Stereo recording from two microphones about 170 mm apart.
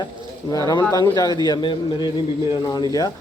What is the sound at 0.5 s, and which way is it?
Speech, 25° left (ahead or behind).